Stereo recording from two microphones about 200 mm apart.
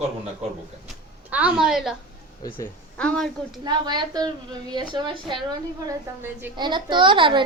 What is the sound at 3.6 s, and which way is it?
A woman's voice, 20° right (ahead or behind).